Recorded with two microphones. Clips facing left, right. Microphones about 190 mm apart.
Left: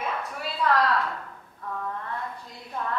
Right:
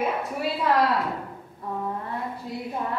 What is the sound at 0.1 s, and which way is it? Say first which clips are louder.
Speech: right 6 dB; 10° right (ahead or behind).